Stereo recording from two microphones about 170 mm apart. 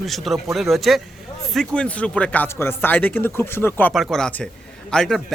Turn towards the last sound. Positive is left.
turn(degrees=0)  # may be behind; listen again after turning